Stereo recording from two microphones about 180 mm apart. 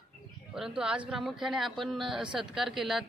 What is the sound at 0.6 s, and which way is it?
Speech, 5° right (ahead or behind).